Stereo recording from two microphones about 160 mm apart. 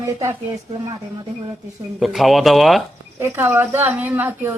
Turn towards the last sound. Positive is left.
turn(degrees=-15)  # may be behind; listen again after turning